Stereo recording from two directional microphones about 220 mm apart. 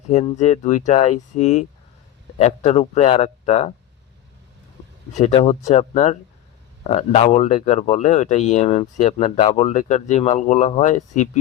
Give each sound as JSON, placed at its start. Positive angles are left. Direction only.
{"t": 0.1, "sound": "speech", "side_deg": 30}
{"t": 5.1, "sound": "speech", "side_deg": 30}